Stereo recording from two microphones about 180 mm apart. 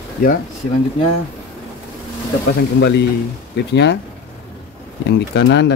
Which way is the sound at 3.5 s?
70° left (ahead or behind).